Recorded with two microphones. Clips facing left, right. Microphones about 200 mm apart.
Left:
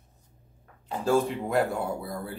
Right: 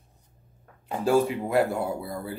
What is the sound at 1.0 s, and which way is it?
Speech, 5° right (ahead or behind).